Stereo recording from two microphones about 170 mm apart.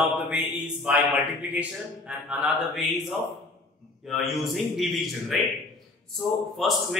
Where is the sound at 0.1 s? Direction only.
5° right (ahead or behind).